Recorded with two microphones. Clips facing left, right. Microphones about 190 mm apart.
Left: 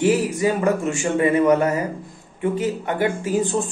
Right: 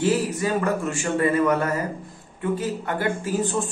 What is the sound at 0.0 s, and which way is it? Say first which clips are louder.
Speech: left 4 dB; 15° left (ahead or behind).